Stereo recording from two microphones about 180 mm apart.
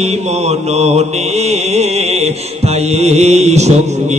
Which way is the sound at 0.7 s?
35° right (ahead or behind).